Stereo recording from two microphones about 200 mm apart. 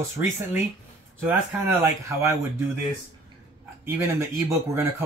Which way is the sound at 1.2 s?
10° right (ahead or behind).